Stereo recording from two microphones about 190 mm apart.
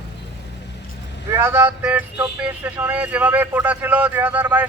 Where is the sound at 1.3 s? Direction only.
10° right (ahead or behind).